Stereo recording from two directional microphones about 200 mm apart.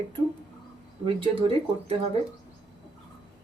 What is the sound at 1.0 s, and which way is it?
Speech, 30° right (ahead or behind).